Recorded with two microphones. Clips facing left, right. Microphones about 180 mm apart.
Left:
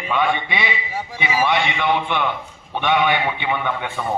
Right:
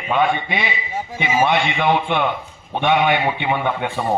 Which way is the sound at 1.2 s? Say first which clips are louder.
Right 3 dB; 65° right (ahead or behind).